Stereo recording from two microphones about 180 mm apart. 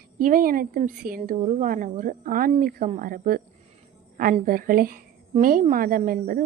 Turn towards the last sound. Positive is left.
turn(degrees=-50)  # may be behind; listen again after turning